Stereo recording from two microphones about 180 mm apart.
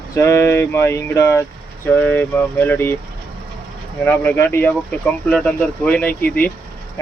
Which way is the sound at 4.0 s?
10° left (ahead or behind).